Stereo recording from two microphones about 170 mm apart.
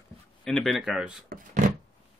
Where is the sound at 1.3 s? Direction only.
45° right (ahead or behind).